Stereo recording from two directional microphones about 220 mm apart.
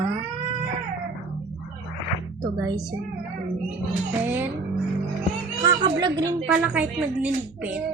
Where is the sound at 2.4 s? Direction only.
15° right (ahead or behind).